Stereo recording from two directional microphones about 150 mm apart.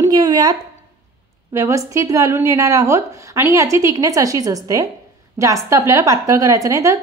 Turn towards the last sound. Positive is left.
turn(degrees=-20)  # may be behind; listen again after turning